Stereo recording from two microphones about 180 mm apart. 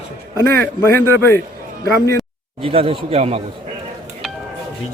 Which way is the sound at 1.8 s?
15° left (ahead or behind).